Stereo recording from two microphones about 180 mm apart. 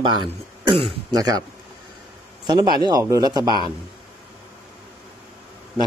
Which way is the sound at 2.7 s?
20° right (ahead or behind).